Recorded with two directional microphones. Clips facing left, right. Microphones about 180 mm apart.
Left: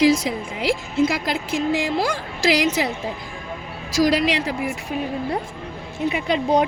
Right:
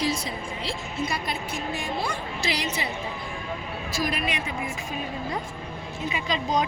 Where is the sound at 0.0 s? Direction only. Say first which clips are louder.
Left 10 dB; 90° left.